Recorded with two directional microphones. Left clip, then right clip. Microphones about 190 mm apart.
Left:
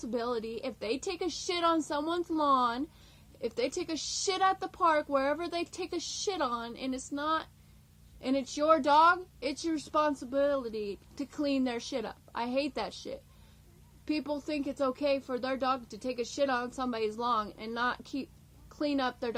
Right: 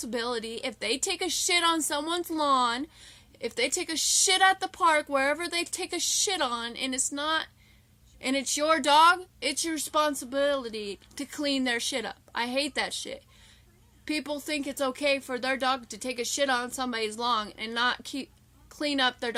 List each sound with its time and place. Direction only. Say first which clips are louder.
0.0 s a woman's voice: right 2 dB; 25° right (ahead or behind)